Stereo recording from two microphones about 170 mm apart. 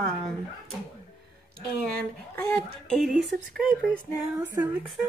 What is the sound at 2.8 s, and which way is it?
Speech, centre (ahead or behind).